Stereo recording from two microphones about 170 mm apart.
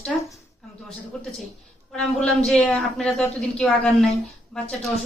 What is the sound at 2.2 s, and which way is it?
A woman's voice, 5° left (ahead or behind).